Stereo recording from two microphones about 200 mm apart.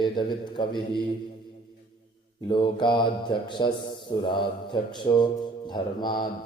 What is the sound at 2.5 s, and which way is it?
A man's voice, 25° left (ahead or behind).